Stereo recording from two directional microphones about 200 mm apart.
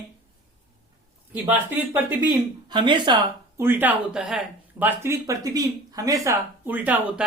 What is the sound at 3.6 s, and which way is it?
Speech, 10° right (ahead or behind).